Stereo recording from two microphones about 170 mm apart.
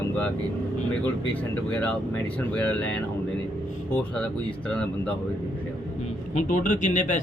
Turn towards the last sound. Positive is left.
turn(degrees=45)  # may be behind; listen again after turning